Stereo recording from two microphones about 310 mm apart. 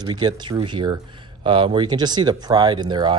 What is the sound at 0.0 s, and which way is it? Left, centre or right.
Speech, centre.